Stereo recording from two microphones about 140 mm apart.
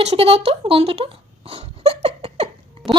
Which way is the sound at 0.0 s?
50° right (ahead or behind).